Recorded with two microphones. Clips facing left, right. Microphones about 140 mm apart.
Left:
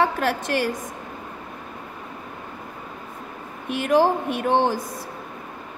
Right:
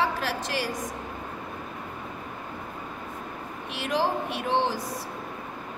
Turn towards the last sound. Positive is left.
turn(degrees=50)  # may be behind; listen again after turning